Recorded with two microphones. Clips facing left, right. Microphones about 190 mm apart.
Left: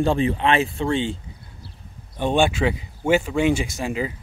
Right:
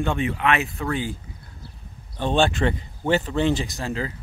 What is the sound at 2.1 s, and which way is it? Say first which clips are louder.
Speech: left 1 dB; 15° left (ahead or behind).